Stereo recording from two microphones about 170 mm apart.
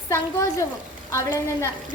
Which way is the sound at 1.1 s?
15° left (ahead or behind).